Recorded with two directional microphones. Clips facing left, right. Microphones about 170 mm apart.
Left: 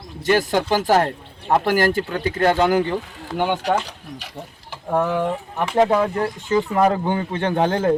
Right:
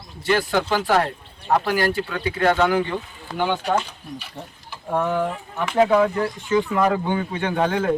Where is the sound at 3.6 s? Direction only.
90° left.